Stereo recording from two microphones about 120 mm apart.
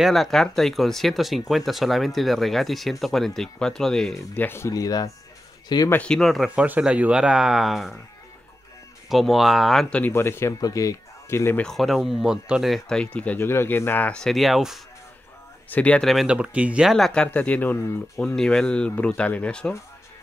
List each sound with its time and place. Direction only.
0.0 s speech: centre (ahead or behind)
4.4 s speech: 20° left (ahead or behind)
5.9 s speech: 10° left (ahead or behind)
6.5 s speech: 10° right (ahead or behind)
9.1 s speech: centre (ahead or behind)
10.1 s speech: 20° left (ahead or behind)
11.6 s speech: centre (ahead or behind)
15.7 s speech: 10° left (ahead or behind); by 16.9 s 10° right (ahead or behind)
16.9 s speech: 5° left (ahead or behind)
18.1 s speech: 5° left (ahead or behind)